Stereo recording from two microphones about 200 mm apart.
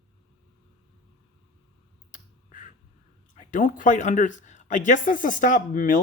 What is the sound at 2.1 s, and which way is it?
Finger snapping, 40° left (ahead or behind).